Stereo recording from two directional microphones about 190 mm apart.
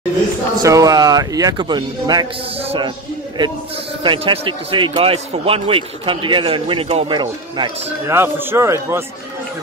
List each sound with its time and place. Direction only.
0.6 s a man's voice: 20° right (ahead or behind)
2.6 s music: 30° right (ahead or behind)
4.0 s a man's voice: 25° right (ahead or behind)
8.1 s a man's voice: 10° right (ahead or behind)